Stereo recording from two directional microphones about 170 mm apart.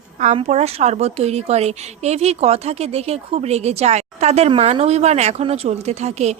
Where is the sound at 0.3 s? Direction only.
40° right (ahead or behind).